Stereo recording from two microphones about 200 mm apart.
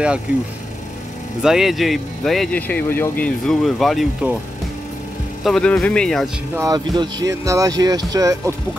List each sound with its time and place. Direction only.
1.4 s speech: centre (ahead or behind)
5.4 s speech: 5° left (ahead or behind)
6.5 s speech: 15° right (ahead or behind)